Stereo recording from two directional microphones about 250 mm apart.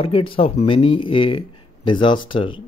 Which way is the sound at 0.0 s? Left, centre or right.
Left.